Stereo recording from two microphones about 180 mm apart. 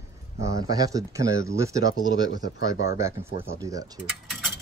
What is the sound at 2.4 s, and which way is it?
Speech, 90° left.